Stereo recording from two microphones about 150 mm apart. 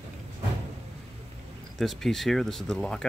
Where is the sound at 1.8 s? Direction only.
Centre (ahead or behind).